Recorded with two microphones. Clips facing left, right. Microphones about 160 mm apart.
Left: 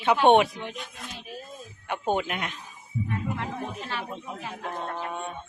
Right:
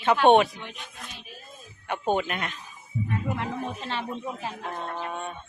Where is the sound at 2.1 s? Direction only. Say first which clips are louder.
Right 1 dB; 10° left (ahead or behind).